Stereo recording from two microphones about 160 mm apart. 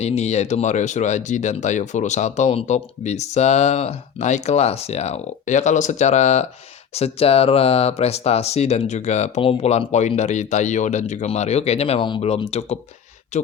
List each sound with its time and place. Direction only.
0.0 s speech: 45° left (ahead or behind)